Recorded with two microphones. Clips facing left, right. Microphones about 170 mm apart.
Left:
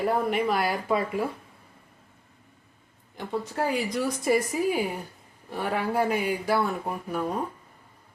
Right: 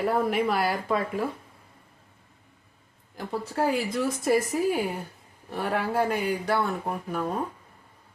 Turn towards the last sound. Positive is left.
turn(degrees=0)  # may be behind; listen again after turning